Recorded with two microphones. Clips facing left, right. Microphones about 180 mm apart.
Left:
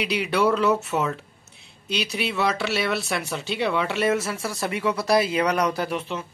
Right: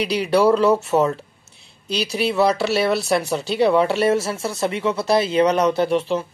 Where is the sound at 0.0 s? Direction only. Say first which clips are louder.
Right 5 dB; 35° right (ahead or behind).